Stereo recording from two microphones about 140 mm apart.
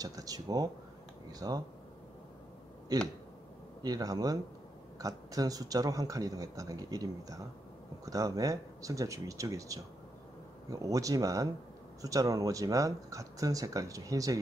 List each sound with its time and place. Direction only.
0.0 s speech: 25° right (ahead or behind)
2.9 s speech: 25° right (ahead or behind)